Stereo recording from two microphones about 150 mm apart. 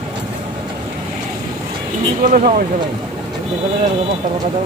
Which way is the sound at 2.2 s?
65° right (ahead or behind).